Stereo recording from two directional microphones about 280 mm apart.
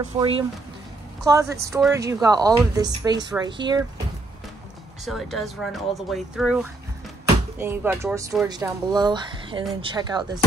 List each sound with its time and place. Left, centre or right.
0.2 s speech: centre
5.0 s speech: centre